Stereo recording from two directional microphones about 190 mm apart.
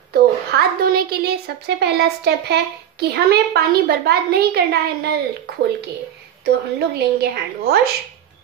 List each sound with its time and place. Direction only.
0.1 s a woman's voice: 50° right (ahead or behind)
6.4 s a woman's voice: 60° right (ahead or behind)